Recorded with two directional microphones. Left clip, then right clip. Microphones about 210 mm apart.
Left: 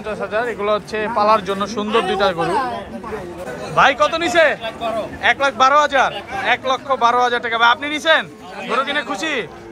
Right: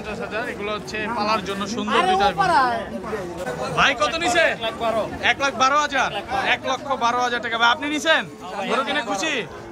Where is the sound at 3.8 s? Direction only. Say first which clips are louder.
Left 6 dB; 5° right (ahead or behind).